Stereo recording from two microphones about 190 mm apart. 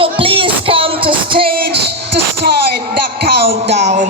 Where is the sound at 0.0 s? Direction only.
30° right (ahead or behind).